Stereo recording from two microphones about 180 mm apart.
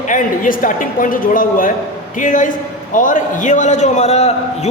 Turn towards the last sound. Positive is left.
turn(degrees=35)  # may be behind; listen again after turning